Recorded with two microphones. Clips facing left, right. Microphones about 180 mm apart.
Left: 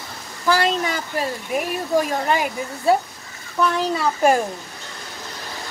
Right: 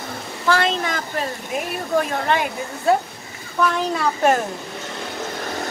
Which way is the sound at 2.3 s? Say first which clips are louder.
Even; 5° left (ahead or behind).